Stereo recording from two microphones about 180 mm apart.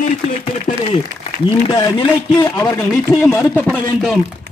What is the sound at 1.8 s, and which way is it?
Speech, 25° left (ahead or behind).